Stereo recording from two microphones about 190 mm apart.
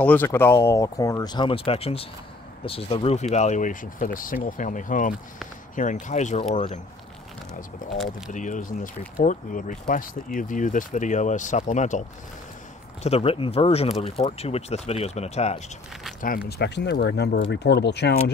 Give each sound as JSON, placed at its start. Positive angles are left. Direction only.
{"t": 0.0, "sound": "speech", "side_deg": 10}
{"t": 8.3, "sound": "speech", "side_deg": 40}
{"t": 13.0, "sound": "speech", "side_deg": 30}
{"t": 16.4, "sound": "speech", "side_deg": 60}